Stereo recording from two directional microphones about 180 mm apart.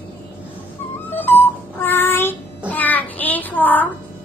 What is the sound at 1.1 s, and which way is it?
Child singing, 10° left (ahead or behind).